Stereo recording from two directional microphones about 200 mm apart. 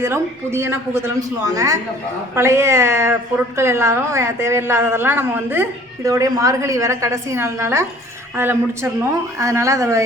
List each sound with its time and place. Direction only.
0.0 s a woman's voice: 10° right (ahead or behind)